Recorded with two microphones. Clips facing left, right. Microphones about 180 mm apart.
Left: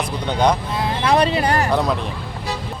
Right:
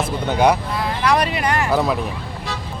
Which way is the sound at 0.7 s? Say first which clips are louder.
Left 1 dB; 25° left (ahead or behind).